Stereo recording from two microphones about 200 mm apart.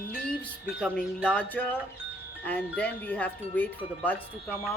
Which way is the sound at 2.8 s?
10° left (ahead or behind).